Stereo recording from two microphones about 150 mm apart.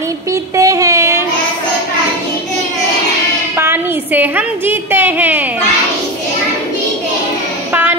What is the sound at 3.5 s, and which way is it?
A woman's voice, 15° right (ahead or behind).